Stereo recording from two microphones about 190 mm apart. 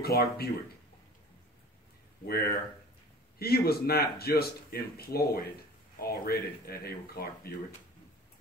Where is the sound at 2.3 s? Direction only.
55° left (ahead or behind).